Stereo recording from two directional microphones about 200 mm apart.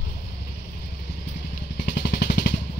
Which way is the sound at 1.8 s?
55° left (ahead or behind).